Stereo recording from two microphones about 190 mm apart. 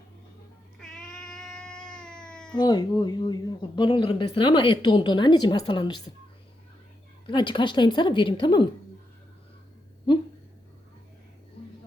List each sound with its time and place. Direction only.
0.8 s cat: 5° left (ahead or behind)
2.6 s speech: 20° left (ahead or behind)
7.3 s speech: 25° left (ahead or behind)